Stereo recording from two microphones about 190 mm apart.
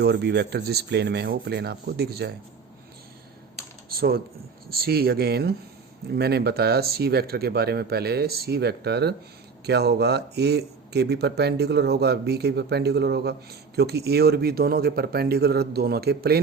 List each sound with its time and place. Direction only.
0.0 s speech: 60° right (ahead or behind)
3.8 s computer keyboard: 55° right (ahead or behind)
4.7 s speech: 55° right (ahead or behind)